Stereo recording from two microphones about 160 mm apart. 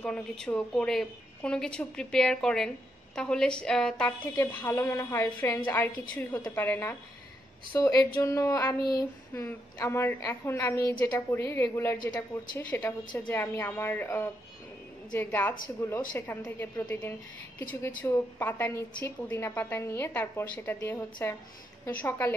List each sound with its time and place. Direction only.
0.0 s a woman's voice: 5° left (ahead or behind)
7.7 s child singing: 25° left (ahead or behind)
11.1 s a woman's voice: 15° left (ahead or behind)